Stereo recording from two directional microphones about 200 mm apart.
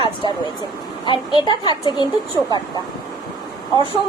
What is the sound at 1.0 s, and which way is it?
Speech, 25° left (ahead or behind).